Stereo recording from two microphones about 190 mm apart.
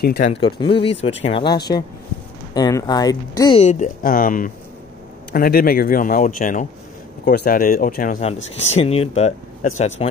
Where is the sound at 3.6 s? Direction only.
40° left (ahead or behind).